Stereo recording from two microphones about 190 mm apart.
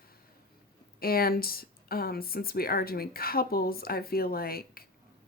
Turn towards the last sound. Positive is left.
turn(degrees=50)  # may be behind; listen again after turning